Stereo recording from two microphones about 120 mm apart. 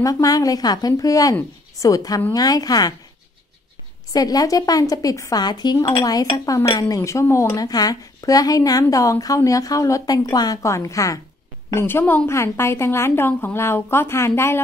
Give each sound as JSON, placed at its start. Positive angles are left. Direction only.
{"t": 0.0, "sound": "a woman's voice", "side_deg": 30}
{"t": 4.1, "sound": "a woman's voice", "side_deg": 30}